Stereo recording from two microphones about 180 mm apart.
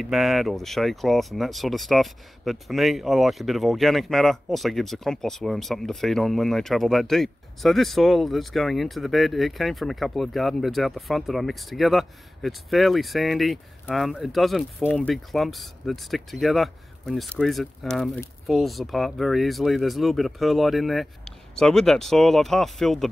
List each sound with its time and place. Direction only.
0.0 s speech: centre (ahead or behind)